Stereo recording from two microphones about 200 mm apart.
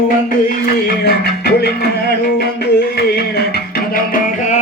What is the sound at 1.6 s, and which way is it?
Music, 55° left (ahead or behind).